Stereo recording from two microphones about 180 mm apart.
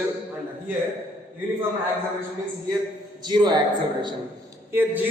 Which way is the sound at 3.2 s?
25° right (ahead or behind).